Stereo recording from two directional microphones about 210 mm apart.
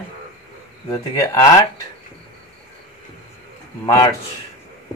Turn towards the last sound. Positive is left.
turn(degrees=15)  # may be behind; listen again after turning